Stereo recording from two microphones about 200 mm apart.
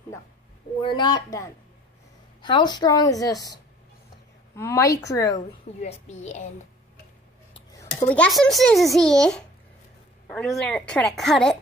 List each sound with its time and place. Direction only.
0.8 s a woman's voice: 20° left (ahead or behind)
4.6 s speech: 15° left (ahead or behind)
5.8 s a woman's voice: 35° left (ahead or behind)
8.1 s a child's voice: 5° left (ahead or behind)